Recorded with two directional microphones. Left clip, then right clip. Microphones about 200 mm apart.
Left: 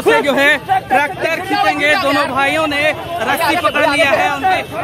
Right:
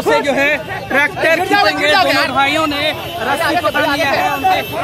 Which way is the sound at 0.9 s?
5° right (ahead or behind).